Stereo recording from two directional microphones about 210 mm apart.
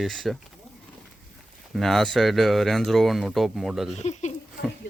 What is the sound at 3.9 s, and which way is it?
Speech, 30° left (ahead or behind).